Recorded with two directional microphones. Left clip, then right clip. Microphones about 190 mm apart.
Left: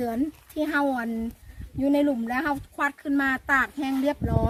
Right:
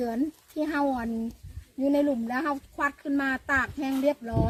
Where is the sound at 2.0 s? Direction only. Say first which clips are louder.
Left 2 dB; 15° right (ahead or behind).